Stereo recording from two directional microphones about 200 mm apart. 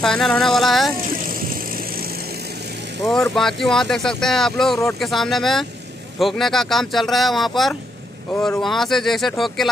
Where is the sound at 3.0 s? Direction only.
5° left (ahead or behind).